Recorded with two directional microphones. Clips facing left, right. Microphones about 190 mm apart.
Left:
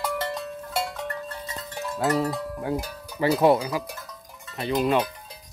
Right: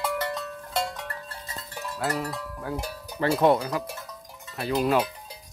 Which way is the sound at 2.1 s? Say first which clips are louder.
Left 6 dB; 25° left (ahead or behind).